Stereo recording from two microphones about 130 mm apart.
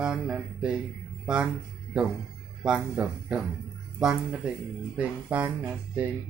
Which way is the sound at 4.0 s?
5° right (ahead or behind).